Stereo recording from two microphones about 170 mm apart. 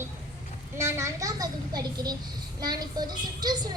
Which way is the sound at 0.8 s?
15° right (ahead or behind).